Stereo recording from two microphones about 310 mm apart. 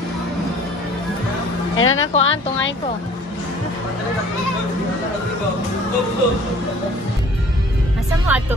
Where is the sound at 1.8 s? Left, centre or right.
Left.